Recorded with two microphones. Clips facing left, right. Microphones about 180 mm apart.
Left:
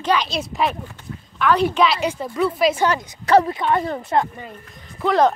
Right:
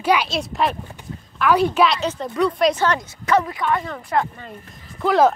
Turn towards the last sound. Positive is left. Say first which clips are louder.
# right 1 dB
turn(degrees=0)  # may be behind; listen again after turning